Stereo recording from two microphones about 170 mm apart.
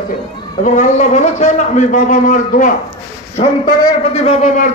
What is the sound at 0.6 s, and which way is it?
A man's voice, 45° left (ahead or behind).